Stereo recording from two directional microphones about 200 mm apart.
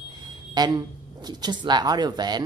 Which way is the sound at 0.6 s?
20° right (ahead or behind).